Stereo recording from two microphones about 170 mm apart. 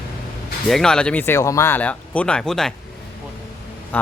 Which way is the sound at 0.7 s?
5° left (ahead or behind).